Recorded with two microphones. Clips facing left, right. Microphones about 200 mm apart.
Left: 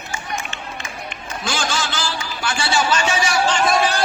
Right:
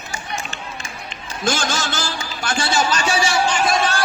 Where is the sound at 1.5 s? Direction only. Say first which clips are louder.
Right 2 dB; 45° right (ahead or behind).